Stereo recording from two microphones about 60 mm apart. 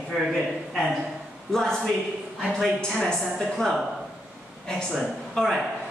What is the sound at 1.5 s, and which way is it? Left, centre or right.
A woman's voice, centre.